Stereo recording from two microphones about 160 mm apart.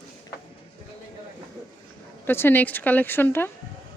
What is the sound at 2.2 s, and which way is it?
Speech, 15° left (ahead or behind).